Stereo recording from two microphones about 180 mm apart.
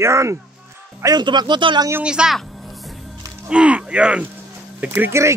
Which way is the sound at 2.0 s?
5° right (ahead or behind).